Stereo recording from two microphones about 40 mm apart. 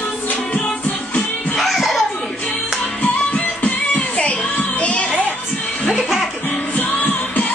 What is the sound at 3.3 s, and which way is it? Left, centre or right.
Music, left.